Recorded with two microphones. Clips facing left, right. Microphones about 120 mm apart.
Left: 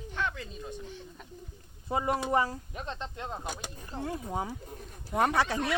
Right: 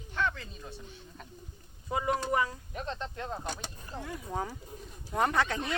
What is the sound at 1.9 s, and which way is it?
Speech, 35° left (ahead or behind).